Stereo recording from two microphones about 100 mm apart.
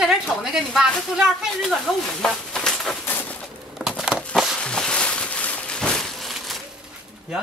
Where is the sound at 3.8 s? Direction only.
10° right (ahead or behind).